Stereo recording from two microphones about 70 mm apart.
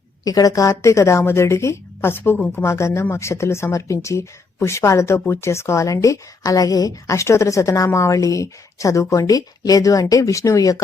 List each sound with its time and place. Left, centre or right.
0.3 s a woman's voice: left
2.6 s speech: left